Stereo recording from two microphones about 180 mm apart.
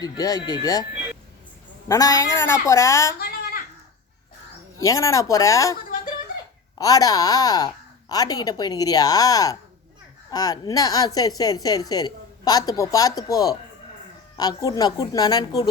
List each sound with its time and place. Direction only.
0.0 s a woman's voice: 20° left (ahead or behind)
1.9 s a woman's voice: 20° left (ahead or behind)
3.2 s a sound: 60° left (ahead or behind)
4.8 s a woman's voice: 15° left (ahead or behind)
6.7 s a woman's voice: 20° left (ahead or behind)